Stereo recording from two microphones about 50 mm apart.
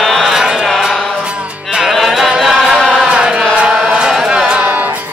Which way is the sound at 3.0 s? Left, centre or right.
Centre.